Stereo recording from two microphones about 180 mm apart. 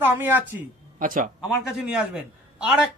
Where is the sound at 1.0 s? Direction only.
50° right (ahead or behind).